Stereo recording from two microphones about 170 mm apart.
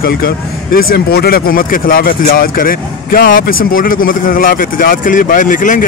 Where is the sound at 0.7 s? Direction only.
65° left (ahead or behind).